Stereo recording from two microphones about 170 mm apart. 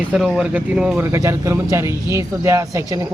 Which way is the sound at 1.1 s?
20° right (ahead or behind).